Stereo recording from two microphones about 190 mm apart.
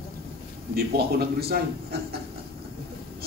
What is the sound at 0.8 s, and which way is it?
Speech, 55° right (ahead or behind).